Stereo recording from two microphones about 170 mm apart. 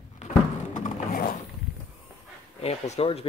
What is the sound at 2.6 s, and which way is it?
Speech, 40° left (ahead or behind).